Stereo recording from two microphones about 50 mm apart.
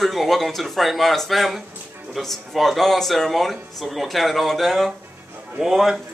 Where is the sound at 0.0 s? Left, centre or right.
Centre.